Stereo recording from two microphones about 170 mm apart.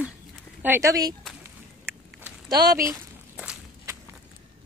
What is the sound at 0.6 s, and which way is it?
Speech, 15° right (ahead or behind).